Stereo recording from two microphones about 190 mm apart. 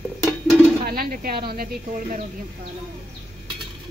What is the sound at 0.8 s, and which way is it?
Speech, 50° right (ahead or behind).